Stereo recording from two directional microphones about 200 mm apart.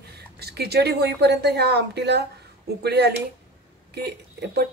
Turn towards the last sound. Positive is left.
turn(degrees=-55)  # may be behind; listen again after turning